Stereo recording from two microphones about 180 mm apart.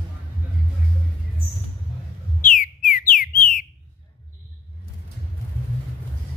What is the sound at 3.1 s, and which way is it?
Bird, 50° left (ahead or behind).